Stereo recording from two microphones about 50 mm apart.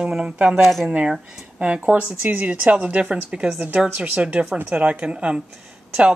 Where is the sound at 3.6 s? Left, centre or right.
Right.